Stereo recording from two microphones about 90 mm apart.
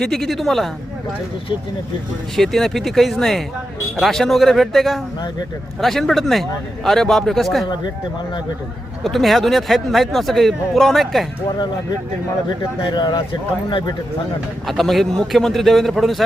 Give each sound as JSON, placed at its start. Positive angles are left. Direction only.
{"t": 0.0, "sound": "speech", "side_deg": 5}
{"t": 2.3, "sound": "speech", "side_deg": 5}
{"t": 9.0, "sound": "speech", "side_deg": 0}
{"t": 12.5, "sound": "speech", "side_deg": 55}
{"t": 14.7, "sound": "speech", "side_deg": 0}